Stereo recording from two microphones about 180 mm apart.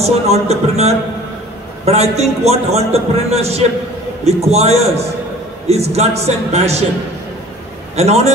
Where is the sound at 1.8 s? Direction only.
35° right (ahead or behind).